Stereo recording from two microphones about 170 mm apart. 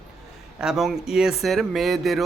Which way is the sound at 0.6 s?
Centre (ahead or behind).